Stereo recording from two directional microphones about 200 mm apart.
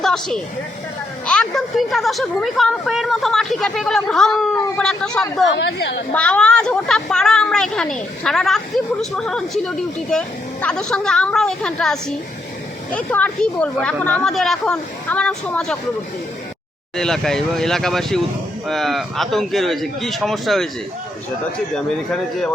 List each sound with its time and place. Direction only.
0.0 s a woman's voice: centre (ahead or behind)
5.5 s a woman's voice: 60° left (ahead or behind)
6.1 s a woman's voice: 5° left (ahead or behind)
17.0 s a woman's voice: centre (ahead or behind)
21.8 s a woman's voice: 5° left (ahead or behind)